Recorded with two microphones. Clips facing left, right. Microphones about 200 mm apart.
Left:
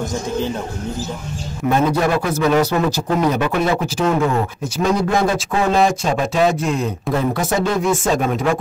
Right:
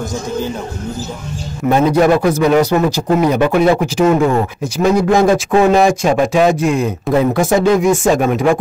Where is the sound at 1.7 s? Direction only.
15° right (ahead or behind).